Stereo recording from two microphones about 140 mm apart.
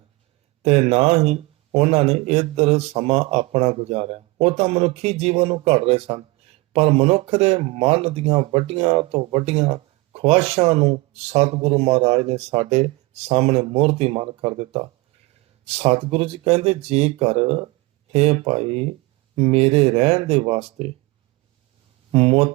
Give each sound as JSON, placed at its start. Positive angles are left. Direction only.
{"t": 0.6, "sound": "speech", "side_deg": -45}
{"t": 22.1, "sound": "speech", "side_deg": -45}